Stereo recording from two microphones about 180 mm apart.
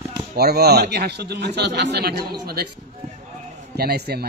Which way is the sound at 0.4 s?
60° right (ahead or behind).